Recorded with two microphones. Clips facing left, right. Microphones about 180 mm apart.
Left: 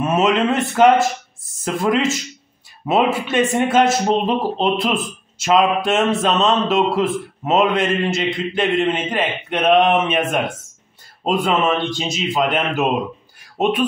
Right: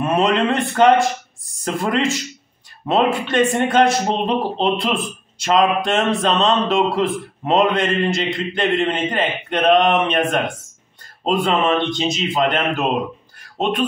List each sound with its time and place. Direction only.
0.0 s speech: centre (ahead or behind)
11.2 s speech: centre (ahead or behind)